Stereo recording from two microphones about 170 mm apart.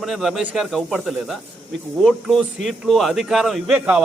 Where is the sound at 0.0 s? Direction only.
Centre (ahead or behind).